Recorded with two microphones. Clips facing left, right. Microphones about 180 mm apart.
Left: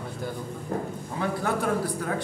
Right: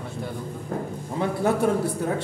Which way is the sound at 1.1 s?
25° right (ahead or behind).